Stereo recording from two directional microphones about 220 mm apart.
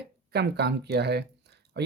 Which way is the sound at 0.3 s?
50° right (ahead or behind).